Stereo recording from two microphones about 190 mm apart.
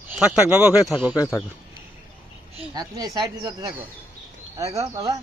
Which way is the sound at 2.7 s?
20° right (ahead or behind).